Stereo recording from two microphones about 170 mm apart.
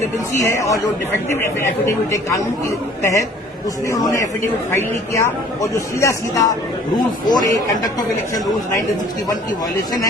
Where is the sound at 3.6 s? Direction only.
20° left (ahead or behind).